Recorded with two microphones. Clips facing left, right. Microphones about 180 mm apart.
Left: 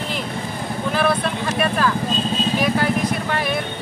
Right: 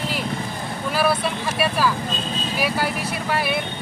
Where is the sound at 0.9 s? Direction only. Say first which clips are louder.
Even; 5° right (ahead or behind).